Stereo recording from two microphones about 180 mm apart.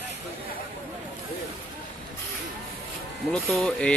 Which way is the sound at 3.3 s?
5° left (ahead or behind).